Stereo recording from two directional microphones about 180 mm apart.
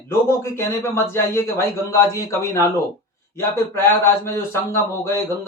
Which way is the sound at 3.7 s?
15° left (ahead or behind).